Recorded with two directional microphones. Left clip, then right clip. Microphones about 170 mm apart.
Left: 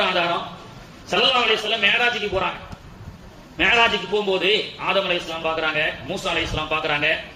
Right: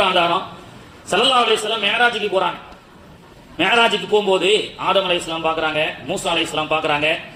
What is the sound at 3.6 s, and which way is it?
A man's voice, 35° right (ahead or behind).